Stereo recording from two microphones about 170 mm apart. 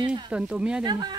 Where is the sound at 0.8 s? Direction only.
25° right (ahead or behind).